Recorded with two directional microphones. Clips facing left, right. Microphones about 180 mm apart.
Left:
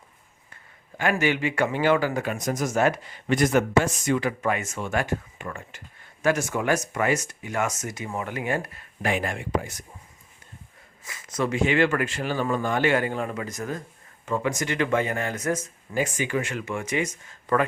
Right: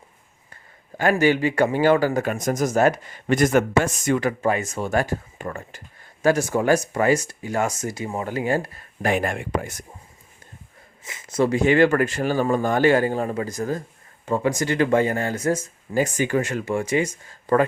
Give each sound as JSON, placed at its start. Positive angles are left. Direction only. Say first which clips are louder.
{"t": 0.5, "sound": "a sound", "louder": "right 5 dB", "side_deg": -40}
{"t": 1.2, "sound": "speech", "louder": "right 7 dB", "side_deg": -35}
{"t": 4.4, "sound": "speech", "louder": "right 4 dB", "side_deg": -35}
{"t": 11.0, "sound": "speech", "louder": "right 6 dB", "side_deg": -25}